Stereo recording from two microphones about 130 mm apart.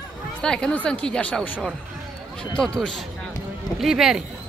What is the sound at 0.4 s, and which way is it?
Speech, 5° left (ahead or behind).